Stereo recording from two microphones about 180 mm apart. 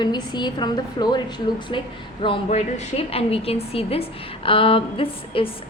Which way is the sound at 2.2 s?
35° left (ahead or behind).